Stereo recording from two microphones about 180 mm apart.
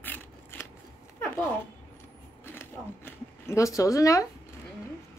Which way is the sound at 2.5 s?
10° left (ahead or behind).